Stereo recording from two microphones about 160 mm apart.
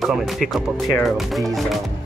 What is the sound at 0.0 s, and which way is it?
Speech, centre (ahead or behind).